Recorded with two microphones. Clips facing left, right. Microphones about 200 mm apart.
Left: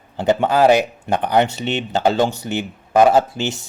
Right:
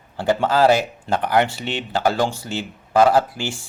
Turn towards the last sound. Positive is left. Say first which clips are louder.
# left 3 dB
turn(degrees=20)  # may be behind; listen again after turning